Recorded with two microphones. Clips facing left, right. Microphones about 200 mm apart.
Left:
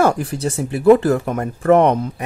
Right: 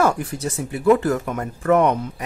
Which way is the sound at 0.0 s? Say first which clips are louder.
Left 3 dB; 30° left (ahead or behind).